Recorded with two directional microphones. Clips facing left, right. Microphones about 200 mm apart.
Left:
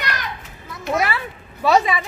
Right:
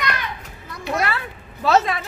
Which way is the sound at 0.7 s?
Centre (ahead or behind).